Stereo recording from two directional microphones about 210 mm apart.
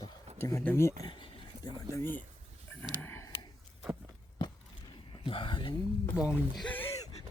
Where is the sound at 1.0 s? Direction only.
20° left (ahead or behind).